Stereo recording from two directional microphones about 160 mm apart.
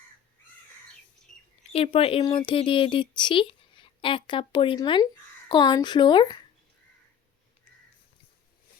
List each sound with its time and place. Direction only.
1.7 s a woman's voice: 35° left (ahead or behind)